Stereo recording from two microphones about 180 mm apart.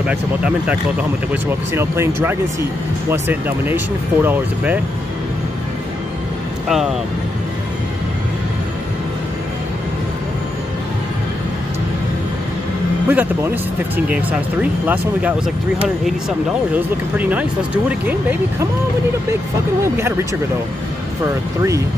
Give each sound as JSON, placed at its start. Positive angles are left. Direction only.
{"t": 1.8, "sound": "speech", "side_deg": -15}
{"t": 6.7, "sound": "speech", "side_deg": 0}
{"t": 13.1, "sound": "speech", "side_deg": -10}
{"t": 19.8, "sound": "speech", "side_deg": -15}